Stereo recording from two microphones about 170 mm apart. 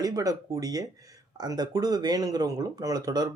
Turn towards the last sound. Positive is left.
turn(degrees=-25)  # may be behind; listen again after turning